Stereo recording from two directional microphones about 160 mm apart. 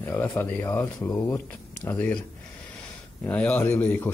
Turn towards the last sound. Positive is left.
turn(degrees=10)  # may be behind; listen again after turning